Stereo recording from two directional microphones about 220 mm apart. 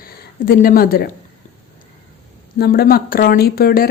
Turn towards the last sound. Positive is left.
turn(degrees=45)  # may be behind; listen again after turning